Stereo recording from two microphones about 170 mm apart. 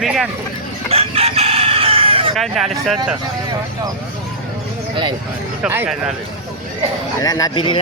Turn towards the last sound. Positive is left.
turn(degrees=30)  # may be behind; listen again after turning